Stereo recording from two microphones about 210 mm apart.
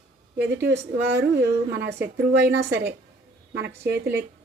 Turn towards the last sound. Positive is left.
turn(degrees=-50)  # may be behind; listen again after turning